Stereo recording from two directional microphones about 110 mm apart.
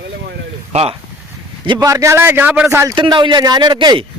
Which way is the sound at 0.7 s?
65° right (ahead or behind).